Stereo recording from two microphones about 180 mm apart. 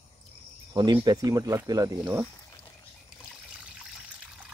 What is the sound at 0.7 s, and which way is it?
Speech, 20° right (ahead or behind).